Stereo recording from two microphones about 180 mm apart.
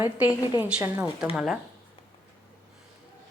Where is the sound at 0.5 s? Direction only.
10° right (ahead or behind).